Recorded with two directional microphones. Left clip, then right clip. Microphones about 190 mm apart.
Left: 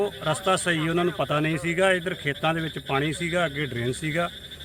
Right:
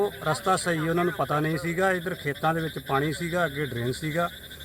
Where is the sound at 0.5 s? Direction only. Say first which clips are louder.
Left 2 dB; 20° left (ahead or behind).